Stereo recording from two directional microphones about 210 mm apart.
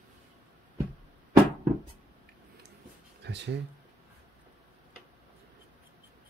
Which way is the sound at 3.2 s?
55° right (ahead or behind).